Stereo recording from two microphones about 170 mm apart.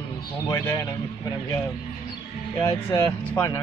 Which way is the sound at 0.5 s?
20° left (ahead or behind).